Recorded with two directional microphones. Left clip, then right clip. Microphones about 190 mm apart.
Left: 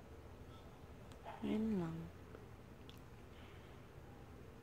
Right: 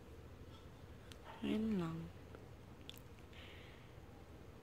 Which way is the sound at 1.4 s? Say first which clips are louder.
Right 1 dB; 10° right (ahead or behind).